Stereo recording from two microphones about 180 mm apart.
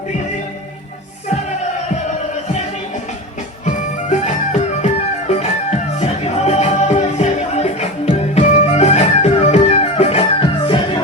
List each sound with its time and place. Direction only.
3.7 s music: 40° left (ahead or behind)